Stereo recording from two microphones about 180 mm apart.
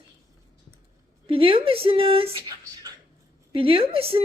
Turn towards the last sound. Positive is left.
turn(degrees=-30)  # may be behind; listen again after turning